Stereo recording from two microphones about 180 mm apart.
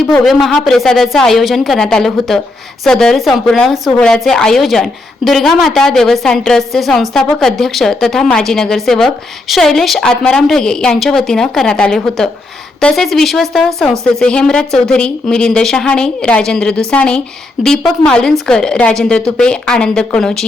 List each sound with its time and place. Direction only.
0.1 s a woman's voice: centre (ahead or behind)